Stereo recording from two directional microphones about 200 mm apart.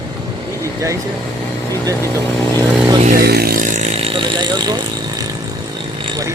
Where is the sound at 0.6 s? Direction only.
15° right (ahead or behind).